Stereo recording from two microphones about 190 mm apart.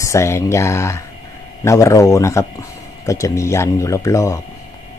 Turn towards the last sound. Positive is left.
turn(degrees=15)  # may be behind; listen again after turning